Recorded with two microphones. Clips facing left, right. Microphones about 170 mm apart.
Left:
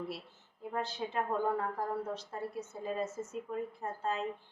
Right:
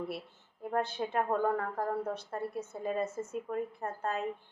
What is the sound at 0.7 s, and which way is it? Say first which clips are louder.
A woman's voice: right 4 dB; 55° right (ahead or behind).